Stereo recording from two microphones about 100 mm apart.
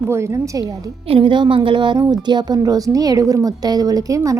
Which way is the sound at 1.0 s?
65° right (ahead or behind).